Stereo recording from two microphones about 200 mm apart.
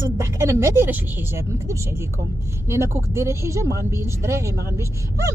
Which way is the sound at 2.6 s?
15° right (ahead or behind).